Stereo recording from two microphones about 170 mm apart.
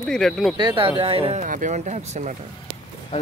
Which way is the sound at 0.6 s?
30° right (ahead or behind).